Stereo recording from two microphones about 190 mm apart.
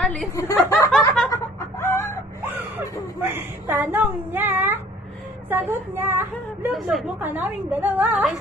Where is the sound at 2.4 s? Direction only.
10° right (ahead or behind).